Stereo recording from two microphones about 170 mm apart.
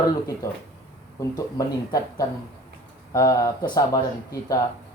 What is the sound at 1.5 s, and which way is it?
A man's voice, 20° left (ahead or behind).